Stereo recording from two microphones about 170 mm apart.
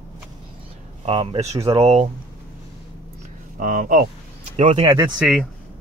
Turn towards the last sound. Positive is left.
turn(degrees=0)  # may be behind; listen again after turning